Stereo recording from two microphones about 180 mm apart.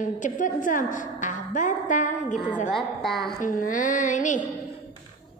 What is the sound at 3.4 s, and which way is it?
A woman's voice, 45° left (ahead or behind).